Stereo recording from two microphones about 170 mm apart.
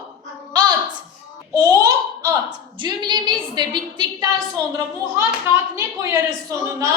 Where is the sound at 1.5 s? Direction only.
20° right (ahead or behind).